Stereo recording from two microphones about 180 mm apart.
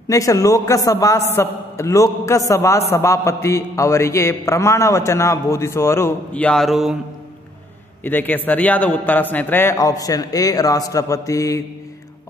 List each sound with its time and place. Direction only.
0.1 s a man's voice: 20° left (ahead or behind); by 7.0 s centre (ahead or behind)
8.0 s a man's voice: 10° left (ahead or behind)